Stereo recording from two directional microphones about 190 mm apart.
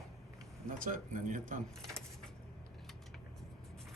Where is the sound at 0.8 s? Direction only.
45° right (ahead or behind).